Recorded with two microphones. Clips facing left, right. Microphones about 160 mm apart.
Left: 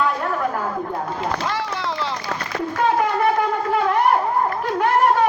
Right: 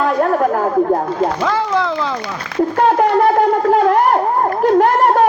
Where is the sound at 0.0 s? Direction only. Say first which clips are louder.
Right 7 dB; 50° right (ahead or behind).